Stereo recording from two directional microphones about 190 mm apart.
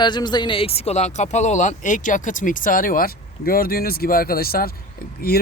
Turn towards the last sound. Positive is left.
turn(degrees=55)  # may be behind; listen again after turning